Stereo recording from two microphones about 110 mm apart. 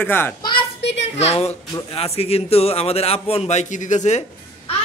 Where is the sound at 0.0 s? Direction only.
20° left (ahead or behind).